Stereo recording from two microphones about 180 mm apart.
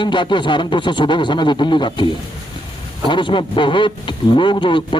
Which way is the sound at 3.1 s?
25° left (ahead or behind).